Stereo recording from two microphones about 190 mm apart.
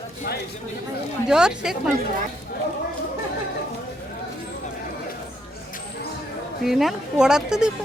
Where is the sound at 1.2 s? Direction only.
5° right (ahead or behind).